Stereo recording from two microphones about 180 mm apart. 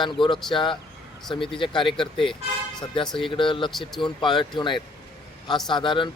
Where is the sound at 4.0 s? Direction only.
25° left (ahead or behind).